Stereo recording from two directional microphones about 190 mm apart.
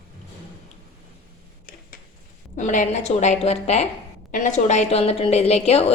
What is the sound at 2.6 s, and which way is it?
A woman's voice, 40° left (ahead or behind).